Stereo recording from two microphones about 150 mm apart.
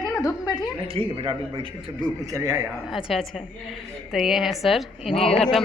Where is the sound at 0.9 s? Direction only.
35° right (ahead or behind).